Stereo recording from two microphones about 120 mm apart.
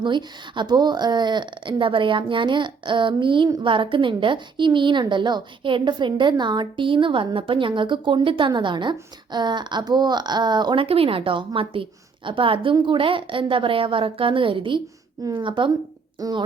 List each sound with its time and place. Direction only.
0.0 s a woman's voice: 40° right (ahead or behind)
10.8 s a woman's voice: 50° right (ahead or behind)
16.2 s a woman's voice: 30° right (ahead or behind)